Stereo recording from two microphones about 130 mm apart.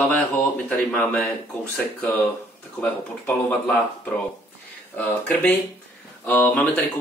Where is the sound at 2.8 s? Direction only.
15° left (ahead or behind).